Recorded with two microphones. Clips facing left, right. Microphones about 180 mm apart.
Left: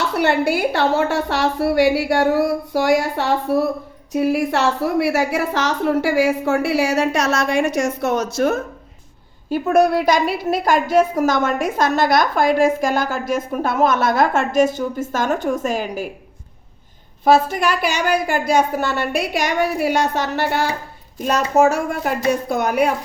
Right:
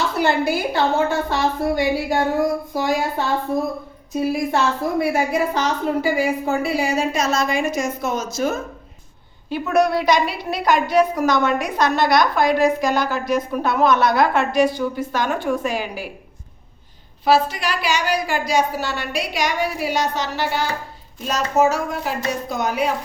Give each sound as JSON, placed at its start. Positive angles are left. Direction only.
{"t": 0.2, "sound": "a woman's voice", "side_deg": 70}
{"t": 10.1, "sound": "a woman's voice", "side_deg": 50}
{"t": 12.5, "sound": "a woman's voice", "side_deg": 5}
{"t": 12.8, "sound": "a woman's voice", "side_deg": 45}
{"t": 17.2, "sound": "a woman's voice", "side_deg": 50}